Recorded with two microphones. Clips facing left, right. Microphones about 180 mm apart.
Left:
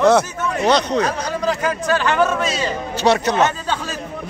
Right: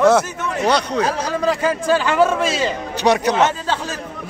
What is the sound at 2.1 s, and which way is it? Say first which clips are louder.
Speech: right 2 dB; 30° right (ahead or behind).